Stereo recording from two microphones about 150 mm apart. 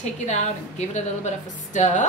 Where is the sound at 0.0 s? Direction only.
50° left (ahead or behind).